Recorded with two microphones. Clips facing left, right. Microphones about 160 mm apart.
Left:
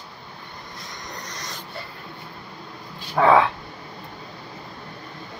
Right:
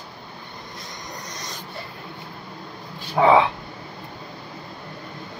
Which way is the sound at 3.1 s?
15° right (ahead or behind).